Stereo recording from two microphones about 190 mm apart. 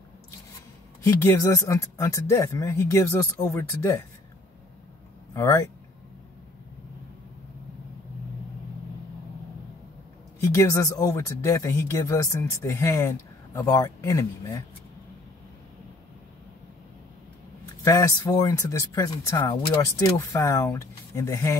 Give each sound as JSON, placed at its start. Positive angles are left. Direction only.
{"t": 1.0, "sound": "speech", "side_deg": 15}
{"t": 5.3, "sound": "speech", "side_deg": 15}
{"t": 10.4, "sound": "speech", "side_deg": 15}
{"t": 17.8, "sound": "speech", "side_deg": 15}